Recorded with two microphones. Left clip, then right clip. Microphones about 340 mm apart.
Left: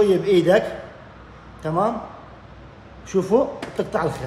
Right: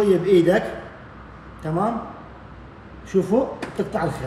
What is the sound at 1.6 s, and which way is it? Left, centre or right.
Speech, centre.